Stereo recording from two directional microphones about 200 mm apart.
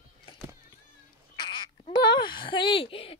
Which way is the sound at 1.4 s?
20° left (ahead or behind).